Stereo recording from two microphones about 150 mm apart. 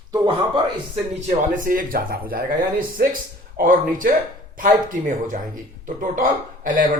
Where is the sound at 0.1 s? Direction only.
35° right (ahead or behind).